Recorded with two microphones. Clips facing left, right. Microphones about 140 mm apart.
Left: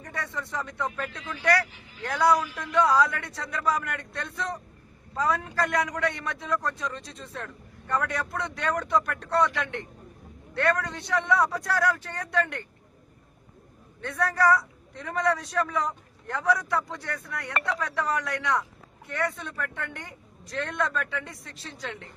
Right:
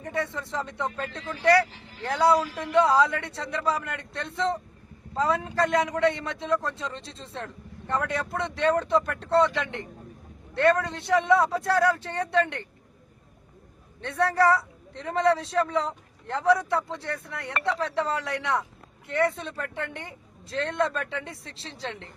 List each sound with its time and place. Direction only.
0.0 s a man's voice: 25° right (ahead or behind)
14.0 s a man's voice: 25° right (ahead or behind)